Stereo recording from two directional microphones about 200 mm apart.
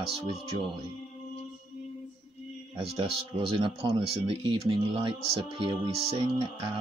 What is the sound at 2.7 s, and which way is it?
Speech, 30° right (ahead or behind).